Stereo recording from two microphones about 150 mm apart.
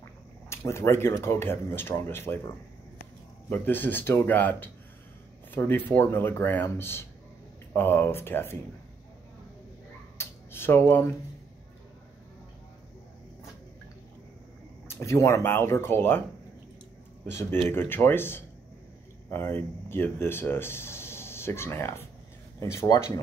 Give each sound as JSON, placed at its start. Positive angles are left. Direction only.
{"t": 0.5, "sound": "speech", "side_deg": 15}
{"t": 3.4, "sound": "speech", "side_deg": 15}
{"t": 10.1, "sound": "a sound", "side_deg": 15}
{"t": 14.9, "sound": "speech", "side_deg": 20}
{"t": 17.3, "sound": "speech", "side_deg": 15}